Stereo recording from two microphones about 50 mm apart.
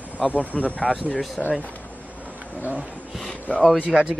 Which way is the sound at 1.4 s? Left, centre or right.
Centre.